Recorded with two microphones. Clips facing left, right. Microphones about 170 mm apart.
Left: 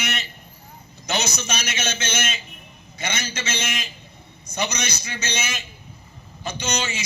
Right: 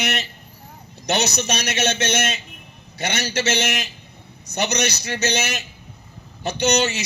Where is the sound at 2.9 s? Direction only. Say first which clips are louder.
Right 6 dB; 70° right (ahead or behind).